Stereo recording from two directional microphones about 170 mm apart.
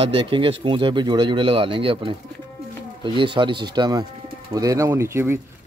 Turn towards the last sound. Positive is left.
turn(degrees=-15)  # may be behind; listen again after turning